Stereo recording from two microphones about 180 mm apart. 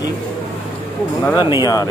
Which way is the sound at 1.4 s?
25° left (ahead or behind).